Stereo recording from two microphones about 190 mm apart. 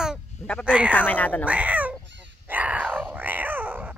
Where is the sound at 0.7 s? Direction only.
5° right (ahead or behind).